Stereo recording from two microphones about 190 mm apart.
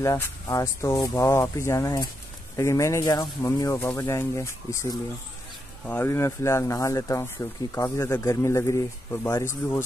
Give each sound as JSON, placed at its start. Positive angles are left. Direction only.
{"t": 0.0, "sound": "speech", "side_deg": 15}